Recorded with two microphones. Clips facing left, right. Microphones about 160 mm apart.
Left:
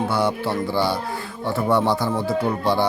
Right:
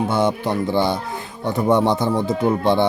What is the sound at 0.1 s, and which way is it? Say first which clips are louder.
Speech: right 2 dB; 20° right (ahead or behind).